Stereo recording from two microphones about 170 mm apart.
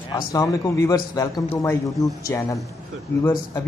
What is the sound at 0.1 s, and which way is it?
Speech, 20° left (ahead or behind).